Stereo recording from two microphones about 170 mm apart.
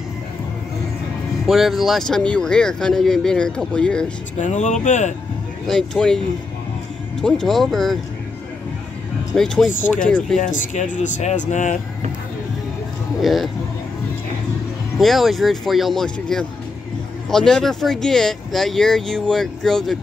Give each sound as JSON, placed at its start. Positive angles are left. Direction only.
{"t": 1.4, "sound": "speech", "side_deg": 0}
{"t": 4.4, "sound": "speech", "side_deg": 45}
{"t": 5.7, "sound": "speech", "side_deg": 5}
{"t": 9.3, "sound": "speech", "side_deg": 5}
{"t": 10.4, "sound": "speech", "side_deg": 50}
{"t": 13.2, "sound": "speech", "side_deg": 0}
{"t": 15.0, "sound": "speech", "side_deg": 0}